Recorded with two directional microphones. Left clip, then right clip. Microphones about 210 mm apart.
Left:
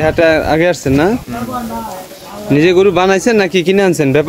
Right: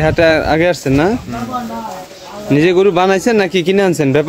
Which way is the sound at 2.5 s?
5° right (ahead or behind).